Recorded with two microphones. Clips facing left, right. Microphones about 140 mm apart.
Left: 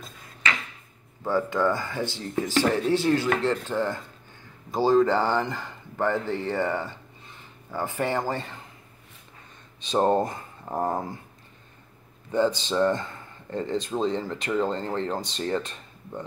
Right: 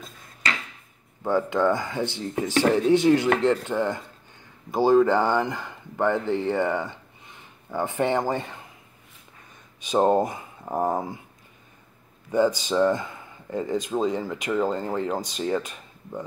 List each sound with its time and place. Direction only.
1.2 s speech: 20° right (ahead or behind)
9.8 s speech: 10° right (ahead or behind)
12.3 s speech: 10° right (ahead or behind)